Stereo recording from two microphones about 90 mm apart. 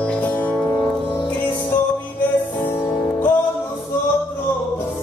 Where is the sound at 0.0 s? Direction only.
15° left (ahead or behind).